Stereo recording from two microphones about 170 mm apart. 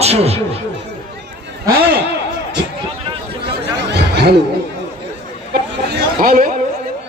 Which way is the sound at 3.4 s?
75° right (ahead or behind).